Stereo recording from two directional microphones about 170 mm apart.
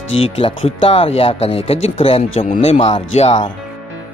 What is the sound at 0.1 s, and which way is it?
Speech, 35° left (ahead or behind).